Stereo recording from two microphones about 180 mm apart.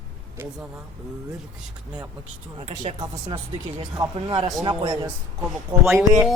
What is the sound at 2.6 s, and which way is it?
Speech, 40° right (ahead or behind).